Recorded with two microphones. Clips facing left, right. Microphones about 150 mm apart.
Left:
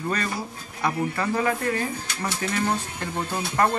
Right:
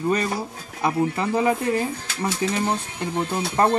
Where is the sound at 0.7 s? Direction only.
20° right (ahead or behind).